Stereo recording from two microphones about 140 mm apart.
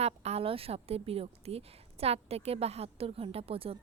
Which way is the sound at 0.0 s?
50° right (ahead or behind).